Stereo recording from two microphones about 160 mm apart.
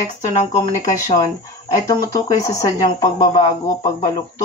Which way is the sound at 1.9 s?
20° left (ahead or behind).